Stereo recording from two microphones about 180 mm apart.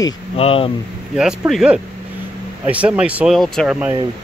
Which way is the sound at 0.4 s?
30° left (ahead or behind).